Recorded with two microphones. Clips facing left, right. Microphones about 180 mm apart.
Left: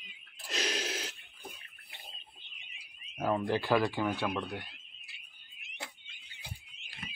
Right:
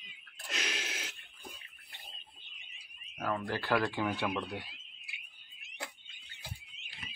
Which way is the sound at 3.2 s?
20° left (ahead or behind).